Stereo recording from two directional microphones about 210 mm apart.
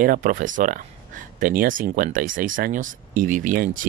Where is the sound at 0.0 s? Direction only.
40° right (ahead or behind).